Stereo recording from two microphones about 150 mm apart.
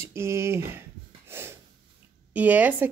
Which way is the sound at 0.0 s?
15° right (ahead or behind).